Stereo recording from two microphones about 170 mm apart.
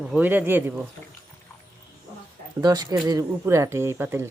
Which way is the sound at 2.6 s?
25° right (ahead or behind).